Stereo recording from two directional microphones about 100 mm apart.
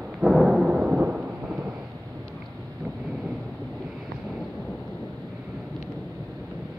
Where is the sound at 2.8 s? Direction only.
5° right (ahead or behind).